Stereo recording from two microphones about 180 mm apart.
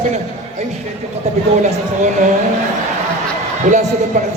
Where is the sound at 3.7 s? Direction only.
45° right (ahead or behind).